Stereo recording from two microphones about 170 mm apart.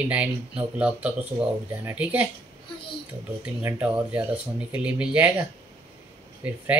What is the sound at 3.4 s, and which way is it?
Speech, 10° right (ahead or behind).